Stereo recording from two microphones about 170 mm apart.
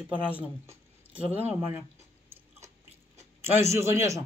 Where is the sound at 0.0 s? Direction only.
10° right (ahead or behind).